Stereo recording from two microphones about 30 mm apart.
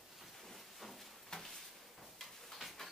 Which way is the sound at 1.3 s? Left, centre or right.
Centre.